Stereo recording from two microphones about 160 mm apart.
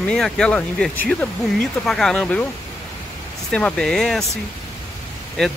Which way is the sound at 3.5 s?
5° left (ahead or behind).